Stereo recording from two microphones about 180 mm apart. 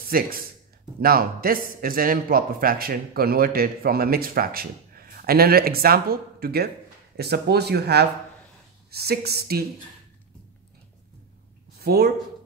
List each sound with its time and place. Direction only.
0.1 s a man's voice: 55° right (ahead or behind)
11.8 s speech: 60° right (ahead or behind)